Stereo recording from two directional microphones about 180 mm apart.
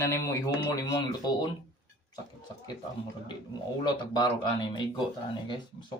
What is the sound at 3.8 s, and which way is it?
Speech, 25° left (ahead or behind).